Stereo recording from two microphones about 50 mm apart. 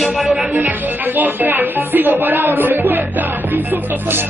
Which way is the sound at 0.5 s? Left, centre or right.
Right.